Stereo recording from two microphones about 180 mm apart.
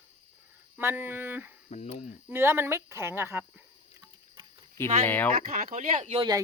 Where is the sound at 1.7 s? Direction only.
40° left (ahead or behind).